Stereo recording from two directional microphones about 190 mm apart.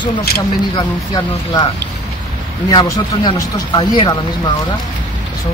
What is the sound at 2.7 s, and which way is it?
Speech, 25° left (ahead or behind).